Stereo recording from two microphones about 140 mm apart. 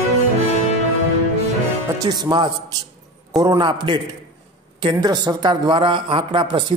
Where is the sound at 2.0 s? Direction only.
30° right (ahead or behind).